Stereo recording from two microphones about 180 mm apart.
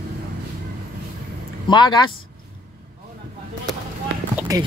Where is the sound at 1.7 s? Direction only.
25° left (ahead or behind).